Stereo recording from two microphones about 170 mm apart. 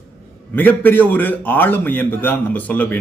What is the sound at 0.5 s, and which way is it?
A man's voice, 10° left (ahead or behind).